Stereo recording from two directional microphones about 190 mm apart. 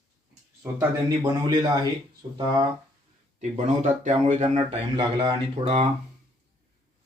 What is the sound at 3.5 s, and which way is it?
Speech, 40° right (ahead or behind).